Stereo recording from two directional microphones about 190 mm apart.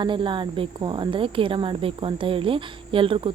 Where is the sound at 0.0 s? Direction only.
25° right (ahead or behind).